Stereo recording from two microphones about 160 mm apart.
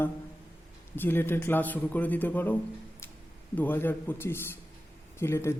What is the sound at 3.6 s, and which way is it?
A woman's voice, 10° left (ahead or behind).